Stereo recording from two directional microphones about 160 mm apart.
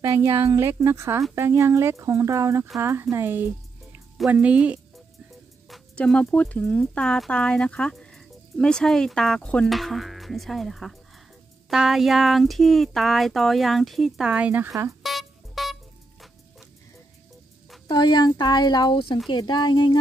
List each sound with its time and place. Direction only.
0.0 s speech: 20° right (ahead or behind)
5.7 s speech: 5° left (ahead or behind); by 15.0 s 15° right (ahead or behind)
15.0 s music: centre (ahead or behind)
17.8 s speech: 25° left (ahead or behind)